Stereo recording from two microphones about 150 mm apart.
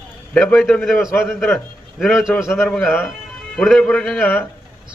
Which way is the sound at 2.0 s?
Centre (ahead or behind).